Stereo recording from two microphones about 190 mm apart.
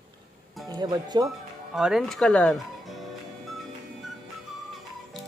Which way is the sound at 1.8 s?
Centre (ahead or behind).